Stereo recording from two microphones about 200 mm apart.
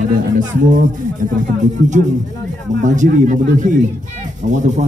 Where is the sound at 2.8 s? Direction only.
40° right (ahead or behind).